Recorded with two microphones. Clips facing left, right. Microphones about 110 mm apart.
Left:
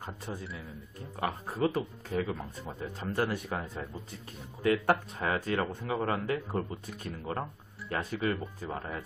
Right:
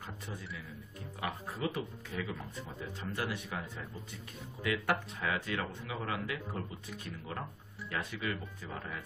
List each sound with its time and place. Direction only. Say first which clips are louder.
0.0 s a man's voice: left 5 dB; 35° left (ahead or behind)
2.8 s speech: left 7 dB; 45° left (ahead or behind)